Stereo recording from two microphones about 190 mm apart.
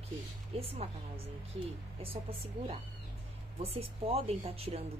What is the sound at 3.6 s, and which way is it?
A woman's voice, 30° right (ahead or behind).